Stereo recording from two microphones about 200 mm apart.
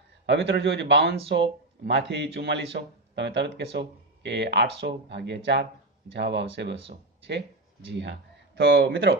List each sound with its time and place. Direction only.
0.3 s speech: 60° right (ahead or behind)